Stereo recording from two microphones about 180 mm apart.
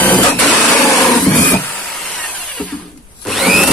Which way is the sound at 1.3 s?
10° left (ahead or behind).